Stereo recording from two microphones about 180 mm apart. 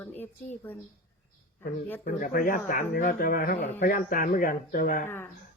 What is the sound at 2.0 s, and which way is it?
Speech, 50° left (ahead or behind).